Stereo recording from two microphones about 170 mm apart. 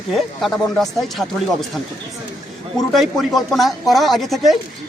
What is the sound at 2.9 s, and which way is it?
Speech, centre (ahead or behind).